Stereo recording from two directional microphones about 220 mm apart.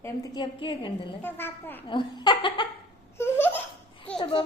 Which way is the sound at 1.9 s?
20° left (ahead or behind).